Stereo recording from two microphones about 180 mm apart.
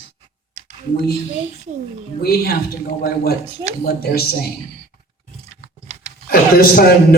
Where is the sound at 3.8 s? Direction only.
60° left (ahead or behind).